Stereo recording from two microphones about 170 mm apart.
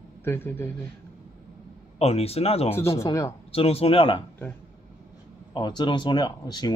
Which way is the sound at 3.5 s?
35° left (ahead or behind).